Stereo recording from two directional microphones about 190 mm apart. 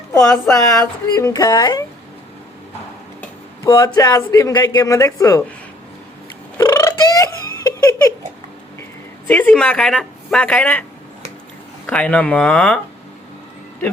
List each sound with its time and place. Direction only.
0.1 s speech: 15° left (ahead or behind)
3.6 s speech: 20° left (ahead or behind)
6.6 s cat: 15° left (ahead or behind)
9.2 s speech: 10° left (ahead or behind)
11.9 s speech: 5° left (ahead or behind)